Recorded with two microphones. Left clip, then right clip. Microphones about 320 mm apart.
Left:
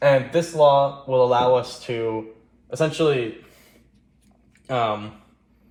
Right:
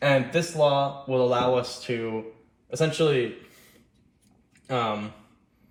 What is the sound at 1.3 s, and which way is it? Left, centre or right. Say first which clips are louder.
Speech: left 5 dB; left.